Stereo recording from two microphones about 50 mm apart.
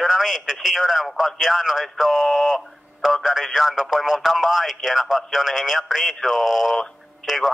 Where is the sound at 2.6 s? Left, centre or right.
Centre.